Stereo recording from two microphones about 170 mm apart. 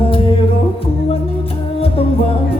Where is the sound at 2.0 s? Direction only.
35° left (ahead or behind).